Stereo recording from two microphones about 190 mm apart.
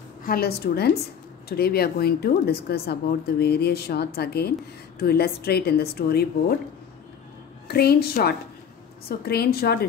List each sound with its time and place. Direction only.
0.2 s speech: 50° left (ahead or behind)
7.6 s speech: 55° left (ahead or behind)